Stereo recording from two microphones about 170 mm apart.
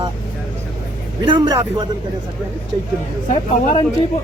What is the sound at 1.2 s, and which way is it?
Speech, 30° right (ahead or behind).